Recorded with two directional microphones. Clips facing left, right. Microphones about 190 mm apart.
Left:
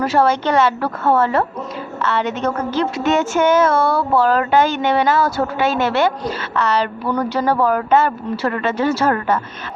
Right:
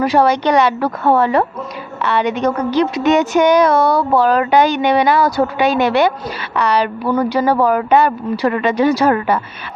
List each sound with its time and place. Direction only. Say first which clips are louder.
0.0 s a woman's voice: right 3 dB; 15° right (ahead or behind)